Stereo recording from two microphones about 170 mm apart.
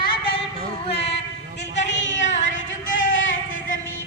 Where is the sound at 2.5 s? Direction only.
90° left.